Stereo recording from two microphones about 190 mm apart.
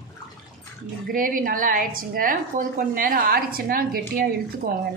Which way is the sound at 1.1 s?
45° right (ahead or behind).